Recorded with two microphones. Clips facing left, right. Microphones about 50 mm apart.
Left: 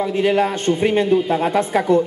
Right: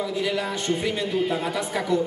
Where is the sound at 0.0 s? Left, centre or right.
Left.